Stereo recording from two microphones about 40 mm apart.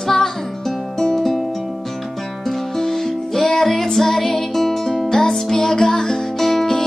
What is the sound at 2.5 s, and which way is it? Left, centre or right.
Music, centre.